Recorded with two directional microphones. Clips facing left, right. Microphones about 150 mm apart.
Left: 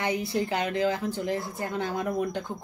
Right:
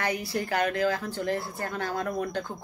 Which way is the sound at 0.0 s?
20° left (ahead or behind).